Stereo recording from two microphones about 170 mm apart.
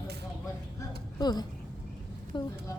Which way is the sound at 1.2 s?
25° left (ahead or behind).